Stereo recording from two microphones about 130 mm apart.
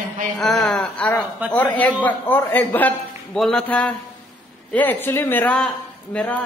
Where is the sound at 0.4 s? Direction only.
Centre (ahead or behind).